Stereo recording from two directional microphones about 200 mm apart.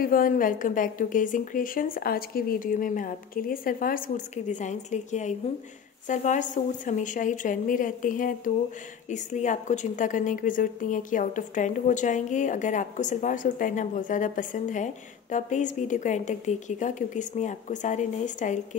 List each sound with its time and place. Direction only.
0.0 s a woman's voice: 45° left (ahead or behind)